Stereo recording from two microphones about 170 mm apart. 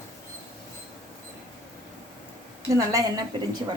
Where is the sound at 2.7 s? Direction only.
20° right (ahead or behind).